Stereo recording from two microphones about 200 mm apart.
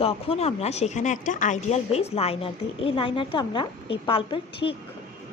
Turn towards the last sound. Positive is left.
turn(degrees=25)  # may be behind; listen again after turning